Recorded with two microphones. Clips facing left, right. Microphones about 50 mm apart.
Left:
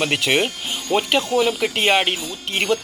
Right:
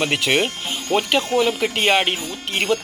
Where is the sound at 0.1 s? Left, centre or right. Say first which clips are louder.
Even; centre.